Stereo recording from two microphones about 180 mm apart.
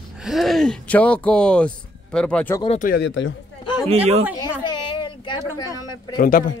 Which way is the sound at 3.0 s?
90° left.